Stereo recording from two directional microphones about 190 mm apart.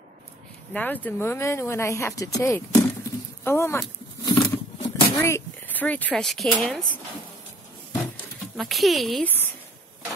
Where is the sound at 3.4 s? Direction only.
15° left (ahead or behind).